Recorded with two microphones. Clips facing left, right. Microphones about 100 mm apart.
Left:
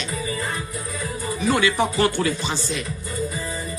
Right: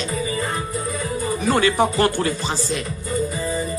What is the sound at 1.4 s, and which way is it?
Speech, 45° right (ahead or behind).